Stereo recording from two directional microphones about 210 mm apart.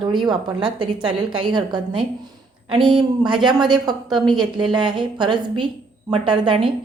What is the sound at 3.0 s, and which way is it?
A woman's voice, 20° right (ahead or behind).